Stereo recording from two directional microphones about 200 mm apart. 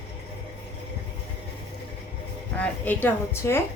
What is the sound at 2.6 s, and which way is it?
A woman's voice, 10° left (ahead or behind).